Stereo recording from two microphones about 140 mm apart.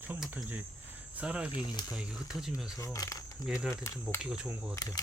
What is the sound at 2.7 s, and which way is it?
Speech, 25° left (ahead or behind).